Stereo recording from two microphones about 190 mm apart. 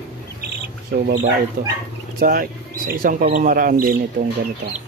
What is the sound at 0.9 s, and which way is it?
Speech, 50° right (ahead or behind).